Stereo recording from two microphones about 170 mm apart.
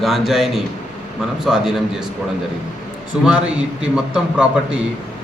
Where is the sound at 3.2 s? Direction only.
5° right (ahead or behind).